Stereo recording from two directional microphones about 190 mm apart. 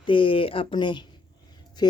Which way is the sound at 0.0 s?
25° left (ahead or behind).